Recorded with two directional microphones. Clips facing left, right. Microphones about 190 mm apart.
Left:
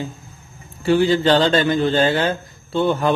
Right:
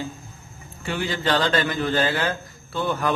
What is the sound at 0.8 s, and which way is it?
A man's voice, 30° left (ahead or behind).